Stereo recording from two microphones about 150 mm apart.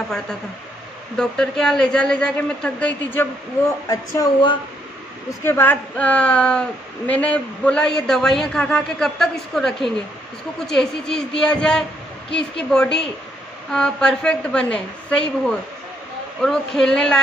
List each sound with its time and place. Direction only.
1.1 s a man's voice: 5° left (ahead or behind)
3.9 s speech: 25° left (ahead or behind)
5.4 s a woman's voice: 15° left (ahead or behind)